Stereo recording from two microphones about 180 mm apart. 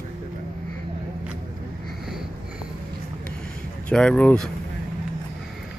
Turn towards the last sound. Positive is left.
turn(degrees=5)  # may be behind; listen again after turning